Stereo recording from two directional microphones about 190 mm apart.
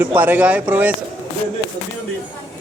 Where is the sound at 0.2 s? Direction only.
10° right (ahead or behind).